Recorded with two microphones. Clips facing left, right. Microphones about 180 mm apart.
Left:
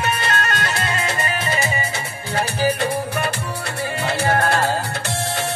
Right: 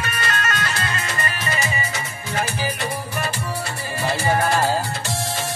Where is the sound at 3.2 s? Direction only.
60° left (ahead or behind).